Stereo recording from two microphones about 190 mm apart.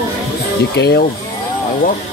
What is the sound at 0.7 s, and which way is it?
Speech, 60° left (ahead or behind).